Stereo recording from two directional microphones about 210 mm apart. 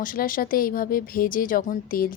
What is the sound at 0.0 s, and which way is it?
A woman's voice, 40° left (ahead or behind).